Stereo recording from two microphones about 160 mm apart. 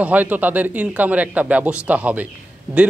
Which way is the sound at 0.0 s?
10° right (ahead or behind).